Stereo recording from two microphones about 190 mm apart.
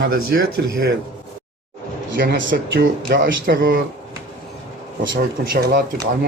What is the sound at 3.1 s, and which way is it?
Speech, 50° right (ahead or behind).